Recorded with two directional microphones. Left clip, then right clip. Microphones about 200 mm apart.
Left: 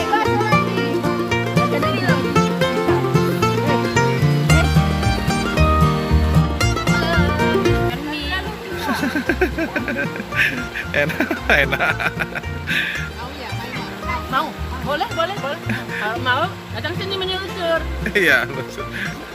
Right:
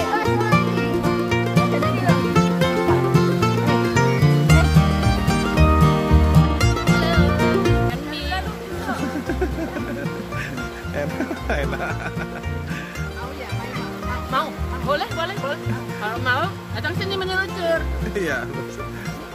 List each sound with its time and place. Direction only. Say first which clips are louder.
0.0 s music: left 3 dB; centre (ahead or behind)
11.0 s music: left 7 dB; 5° left (ahead or behind)
14.9 s music: left 2 dB; 10° right (ahead or behind)
18.1 s speech: left 10 dB; 10° left (ahead or behind)